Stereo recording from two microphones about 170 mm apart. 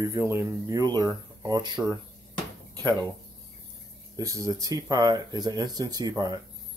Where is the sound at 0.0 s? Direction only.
15° right (ahead or behind).